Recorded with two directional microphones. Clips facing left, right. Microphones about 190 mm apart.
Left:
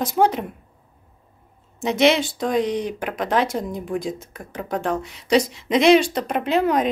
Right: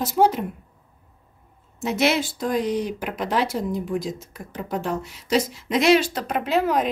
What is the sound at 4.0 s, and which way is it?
Speech, 55° left (ahead or behind).